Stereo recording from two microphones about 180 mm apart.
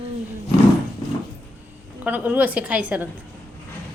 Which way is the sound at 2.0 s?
10° right (ahead or behind).